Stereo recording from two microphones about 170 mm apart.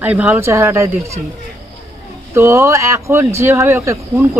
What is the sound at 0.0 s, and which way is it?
Speech, 10° right (ahead or behind).